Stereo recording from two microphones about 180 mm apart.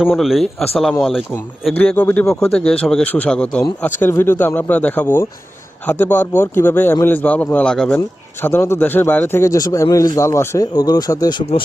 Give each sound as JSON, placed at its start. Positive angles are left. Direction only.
{"t": 0.0, "sound": "a man's voice", "side_deg": 0}